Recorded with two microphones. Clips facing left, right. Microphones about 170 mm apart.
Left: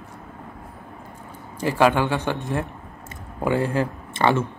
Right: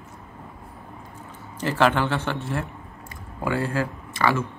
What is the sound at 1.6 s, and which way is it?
Speech, 15° left (ahead or behind).